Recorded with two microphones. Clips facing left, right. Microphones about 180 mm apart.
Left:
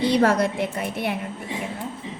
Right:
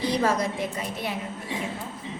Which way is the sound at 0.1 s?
65° left (ahead or behind).